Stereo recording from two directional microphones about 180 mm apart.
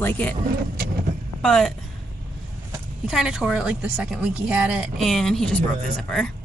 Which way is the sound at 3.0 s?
5° right (ahead or behind).